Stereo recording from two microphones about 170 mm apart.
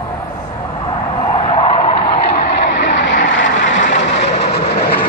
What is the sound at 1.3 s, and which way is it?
Skidding, 30° left (ahead or behind).